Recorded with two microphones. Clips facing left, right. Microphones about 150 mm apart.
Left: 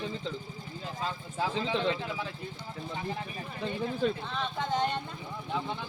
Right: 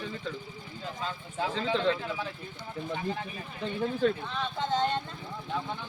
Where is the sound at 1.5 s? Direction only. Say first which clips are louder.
Right 3 dB; 20° left (ahead or behind).